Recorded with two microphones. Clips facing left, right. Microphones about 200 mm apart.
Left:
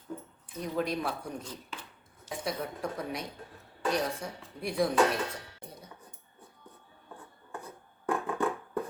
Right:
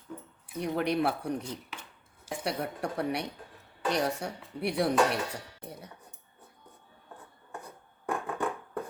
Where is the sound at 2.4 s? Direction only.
70° right (ahead or behind).